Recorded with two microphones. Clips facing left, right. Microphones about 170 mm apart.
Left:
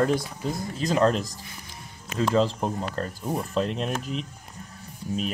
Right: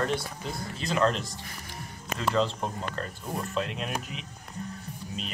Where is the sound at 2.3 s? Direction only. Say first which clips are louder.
Left 3 dB; 35° left (ahead or behind).